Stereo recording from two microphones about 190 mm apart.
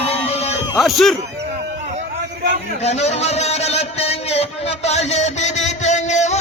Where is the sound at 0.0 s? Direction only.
35° left (ahead or behind).